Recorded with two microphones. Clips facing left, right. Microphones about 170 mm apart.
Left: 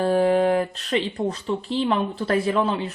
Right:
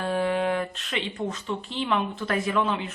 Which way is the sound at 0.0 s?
35° left (ahead or behind).